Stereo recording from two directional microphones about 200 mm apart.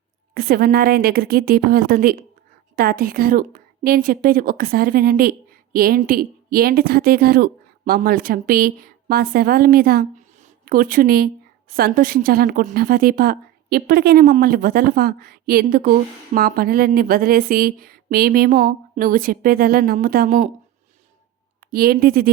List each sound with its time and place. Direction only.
0.3 s a woman's voice: 50° right (ahead or behind)
21.6 s speech: 45° right (ahead or behind)